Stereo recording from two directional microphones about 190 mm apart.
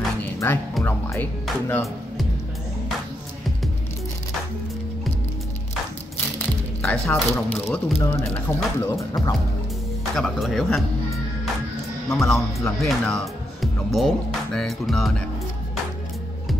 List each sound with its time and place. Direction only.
0.2 s music: 10° left (ahead or behind)
0.7 s speech: 10° left (ahead or behind)
6.1 s speech: 10° left (ahead or behind)
10.1 s speech: centre (ahead or behind)
12.1 s speech: centre (ahead or behind)